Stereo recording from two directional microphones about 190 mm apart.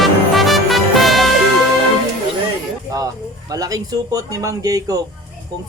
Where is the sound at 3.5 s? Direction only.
20° right (ahead or behind).